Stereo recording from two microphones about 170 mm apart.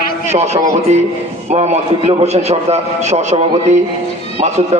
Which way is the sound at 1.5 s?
40° right (ahead or behind).